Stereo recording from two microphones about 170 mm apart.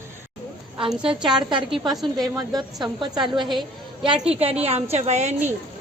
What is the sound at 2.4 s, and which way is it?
A woman's voice, 25° right (ahead or behind).